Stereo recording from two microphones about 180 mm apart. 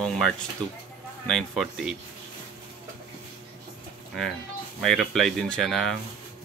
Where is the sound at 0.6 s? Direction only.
25° right (ahead or behind).